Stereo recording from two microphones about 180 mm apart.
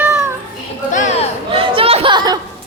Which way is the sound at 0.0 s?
15° right (ahead or behind).